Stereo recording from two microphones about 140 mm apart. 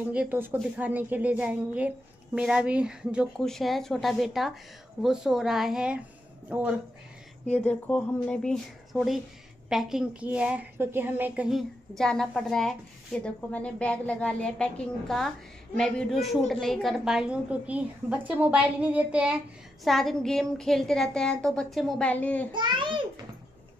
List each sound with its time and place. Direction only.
0.1 s a woman's voice: 10° right (ahead or behind)
7.4 s a woman's voice: 10° left (ahead or behind); by 11.6 s 5° right (ahead or behind)
12.0 s a woman's voice: 5° left (ahead or behind)
22.5 s a child's voice: 35° right (ahead or behind)